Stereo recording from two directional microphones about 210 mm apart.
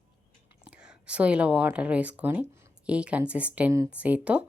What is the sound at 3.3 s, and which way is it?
Speech, 5° right (ahead or behind).